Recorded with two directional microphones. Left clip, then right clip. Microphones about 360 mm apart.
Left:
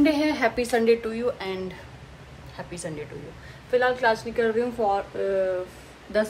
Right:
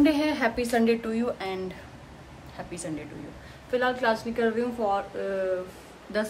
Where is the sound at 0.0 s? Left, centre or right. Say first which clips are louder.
Left 2 dB; centre.